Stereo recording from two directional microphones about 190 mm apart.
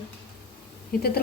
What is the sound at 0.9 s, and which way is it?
Speech, 50° left (ahead or behind).